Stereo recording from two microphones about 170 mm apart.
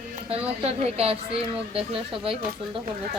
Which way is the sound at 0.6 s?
35° right (ahead or behind).